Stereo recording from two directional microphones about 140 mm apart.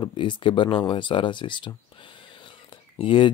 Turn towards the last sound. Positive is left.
turn(degrees=40)  # may be behind; listen again after turning